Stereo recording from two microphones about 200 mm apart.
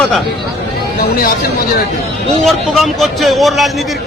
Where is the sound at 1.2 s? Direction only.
45° left (ahead or behind).